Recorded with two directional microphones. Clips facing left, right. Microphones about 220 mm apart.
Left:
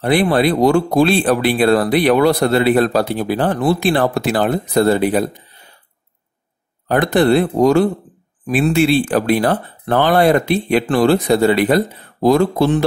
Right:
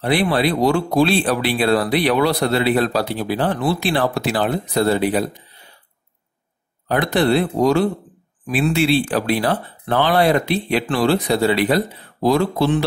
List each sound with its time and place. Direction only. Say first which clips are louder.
0.0 s speech: left 4 dB; 50° left (ahead or behind)
6.9 s speech: left 4 dB; 50° left (ahead or behind)